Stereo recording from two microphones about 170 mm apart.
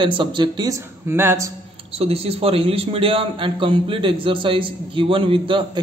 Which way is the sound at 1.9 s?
35° right (ahead or behind).